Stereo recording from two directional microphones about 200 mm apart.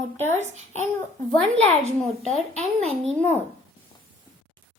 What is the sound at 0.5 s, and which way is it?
Speech, 35° right (ahead or behind).